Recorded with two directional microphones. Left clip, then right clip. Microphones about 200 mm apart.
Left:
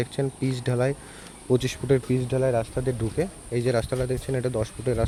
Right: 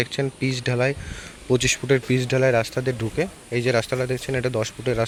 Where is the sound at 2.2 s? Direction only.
10° right (ahead or behind).